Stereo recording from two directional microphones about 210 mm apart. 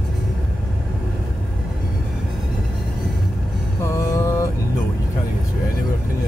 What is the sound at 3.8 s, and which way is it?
Mantra, 15° left (ahead or behind).